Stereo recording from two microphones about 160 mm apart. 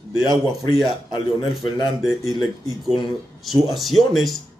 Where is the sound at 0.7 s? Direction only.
30° left (ahead or behind).